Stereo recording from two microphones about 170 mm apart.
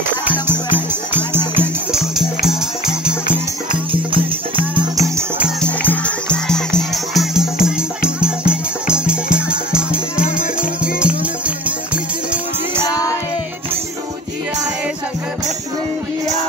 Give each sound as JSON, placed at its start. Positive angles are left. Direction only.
{"t": 0.2, "sound": "music", "side_deg": -10}
{"t": 4.7, "sound": "music", "side_deg": -20}
{"t": 5.6, "sound": "music", "side_deg": 10}
{"t": 12.8, "sound": "music", "side_deg": 20}